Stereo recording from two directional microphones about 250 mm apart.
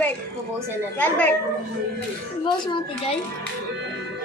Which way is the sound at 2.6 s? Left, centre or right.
Centre.